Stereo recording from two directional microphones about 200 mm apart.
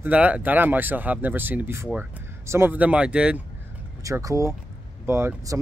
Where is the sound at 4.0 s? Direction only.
15° right (ahead or behind).